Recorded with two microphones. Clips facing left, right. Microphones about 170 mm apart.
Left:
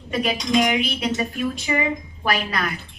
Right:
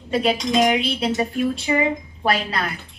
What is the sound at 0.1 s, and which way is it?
A woman's voice, 30° right (ahead or behind).